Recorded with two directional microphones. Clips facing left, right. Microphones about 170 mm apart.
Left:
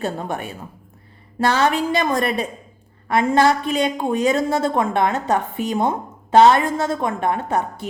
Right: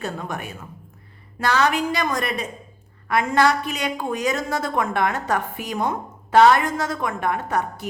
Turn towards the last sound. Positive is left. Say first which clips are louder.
# left 2 dB
turn(degrees=25)  # may be behind; listen again after turning